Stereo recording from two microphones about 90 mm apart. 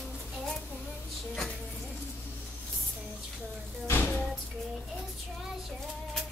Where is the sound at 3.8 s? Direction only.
25° left (ahead or behind).